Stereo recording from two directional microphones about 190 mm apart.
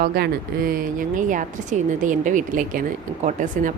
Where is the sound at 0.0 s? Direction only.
50° right (ahead or behind).